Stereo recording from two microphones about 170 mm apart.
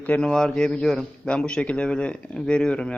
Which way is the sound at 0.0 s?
5° left (ahead or behind).